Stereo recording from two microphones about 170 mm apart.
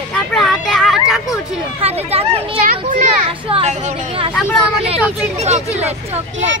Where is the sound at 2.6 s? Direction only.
50° right (ahead or behind).